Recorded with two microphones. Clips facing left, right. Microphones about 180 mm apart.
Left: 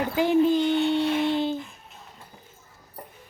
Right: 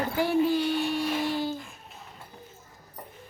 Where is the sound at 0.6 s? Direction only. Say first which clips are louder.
Left 5 dB; 20° left (ahead or behind).